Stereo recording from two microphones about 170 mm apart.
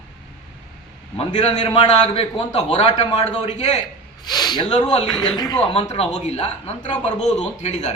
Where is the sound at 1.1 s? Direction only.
35° left (ahead or behind).